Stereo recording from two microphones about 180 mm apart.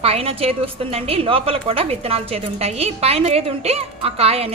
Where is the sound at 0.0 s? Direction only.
35° right (ahead or behind).